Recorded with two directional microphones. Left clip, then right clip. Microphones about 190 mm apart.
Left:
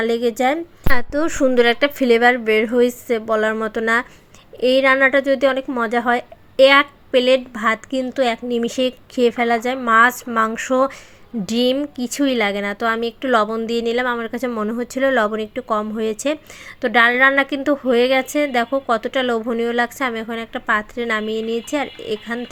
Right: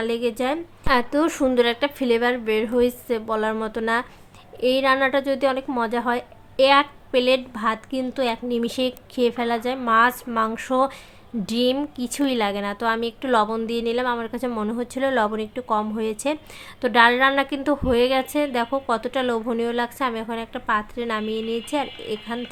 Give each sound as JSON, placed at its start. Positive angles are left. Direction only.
{"t": 0.0, "sound": "a woman's voice", "side_deg": 20}